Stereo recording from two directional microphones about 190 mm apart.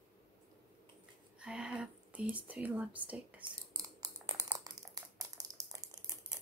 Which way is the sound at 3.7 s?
20° right (ahead or behind).